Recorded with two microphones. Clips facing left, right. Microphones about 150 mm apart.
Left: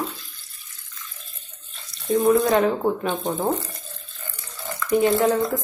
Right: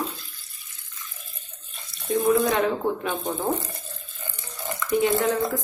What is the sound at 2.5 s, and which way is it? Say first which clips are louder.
Speech: left 4 dB; 40° left (ahead or behind).